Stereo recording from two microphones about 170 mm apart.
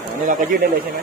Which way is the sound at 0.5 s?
60° right (ahead or behind).